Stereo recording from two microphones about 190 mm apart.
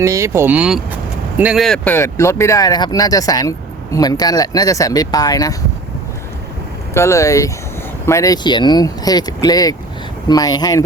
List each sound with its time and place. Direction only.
0.0 s speech: 15° right (ahead or behind); by 5.5 s 20° left (ahead or behind)
6.9 s speech: 15° left (ahead or behind)